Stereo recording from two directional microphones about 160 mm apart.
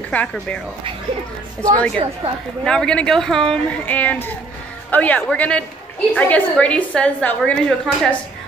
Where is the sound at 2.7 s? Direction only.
5° left (ahead or behind).